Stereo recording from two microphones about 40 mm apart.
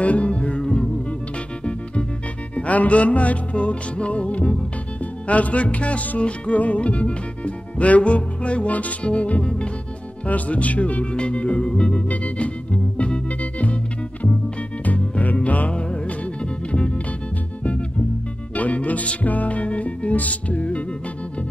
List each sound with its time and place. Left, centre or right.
0.0 s music: left
2.5 s music: left
10.2 s music: left
11.7 s organ: left
12.1 s music: left
15.0 s music: left
15.7 s music: left
18.5 s music: left